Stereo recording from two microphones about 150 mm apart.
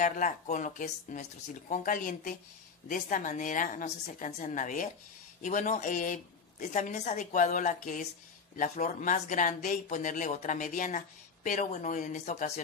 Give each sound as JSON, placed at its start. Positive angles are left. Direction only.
{"t": 0.0, "sound": "speech", "side_deg": 60}